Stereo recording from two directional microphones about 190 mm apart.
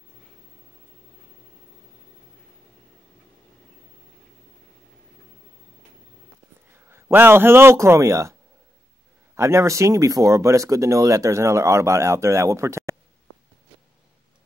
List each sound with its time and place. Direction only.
6.7 s a man's voice: 10° right (ahead or behind)